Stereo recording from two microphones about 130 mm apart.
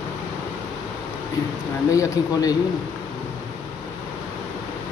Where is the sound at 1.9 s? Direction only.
25° left (ahead or behind).